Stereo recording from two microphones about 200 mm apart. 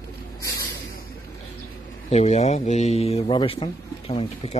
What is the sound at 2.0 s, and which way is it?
Speech, 35° left (ahead or behind).